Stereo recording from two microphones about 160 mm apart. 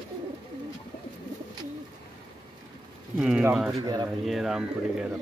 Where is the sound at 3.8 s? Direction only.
25° right (ahead or behind).